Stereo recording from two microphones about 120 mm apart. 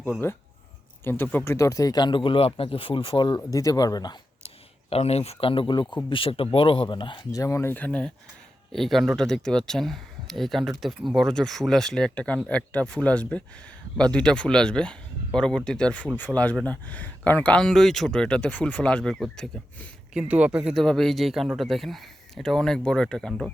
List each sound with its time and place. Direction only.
0.2 s speech: 20° left (ahead or behind)
1.5 s speech: 25° left (ahead or behind)
4.4 s speech: 55° left (ahead or behind); by 19.9 s 5° left (ahead or behind)
20.1 s speech: 10° right (ahead or behind)
20.8 s speech: 5° left (ahead or behind)